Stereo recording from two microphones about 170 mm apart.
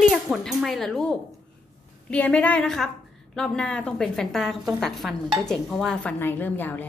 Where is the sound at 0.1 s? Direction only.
Centre (ahead or behind).